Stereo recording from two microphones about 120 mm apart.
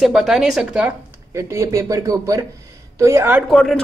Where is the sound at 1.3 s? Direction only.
25° right (ahead or behind).